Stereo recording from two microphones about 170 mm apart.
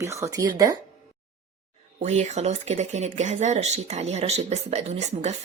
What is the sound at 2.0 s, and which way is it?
Speech, 45° right (ahead or behind).